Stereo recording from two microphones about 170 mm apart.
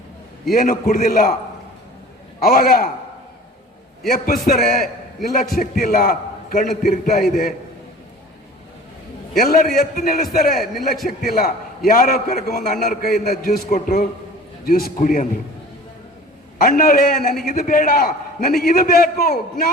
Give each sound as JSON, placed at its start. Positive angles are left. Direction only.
{"t": 0.5, "sound": "a man's voice", "side_deg": 55}
{"t": 2.4, "sound": "a man's voice", "side_deg": 60}
{"t": 4.1, "sound": "a man's voice", "side_deg": 60}
{"t": 9.4, "sound": "a man's voice", "side_deg": 60}
{"t": 10.5, "sound": "speech", "side_deg": 0}
{"t": 11.2, "sound": "a man's voice", "side_deg": 60}
{"t": 14.6, "sound": "a man's voice", "side_deg": 60}
{"t": 16.6, "sound": "a man's voice", "side_deg": 55}